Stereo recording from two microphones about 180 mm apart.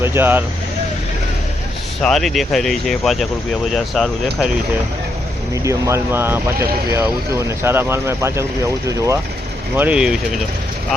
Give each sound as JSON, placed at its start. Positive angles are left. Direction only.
{"t": 0.0, "sound": "speech", "side_deg": -15}
{"t": 2.0, "sound": "speech", "side_deg": 0}
{"t": 5.6, "sound": "speech", "side_deg": -15}
{"t": 9.7, "sound": "speech", "side_deg": -10}